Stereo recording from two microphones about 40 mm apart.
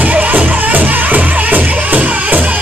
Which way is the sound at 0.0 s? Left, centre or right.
Right.